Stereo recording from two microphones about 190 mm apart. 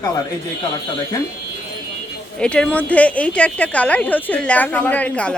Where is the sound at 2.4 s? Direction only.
5° left (ahead or behind).